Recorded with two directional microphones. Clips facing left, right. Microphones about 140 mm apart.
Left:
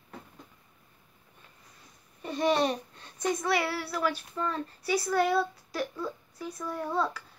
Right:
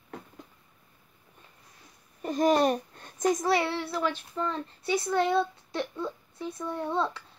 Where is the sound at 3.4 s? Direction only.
30° right (ahead or behind).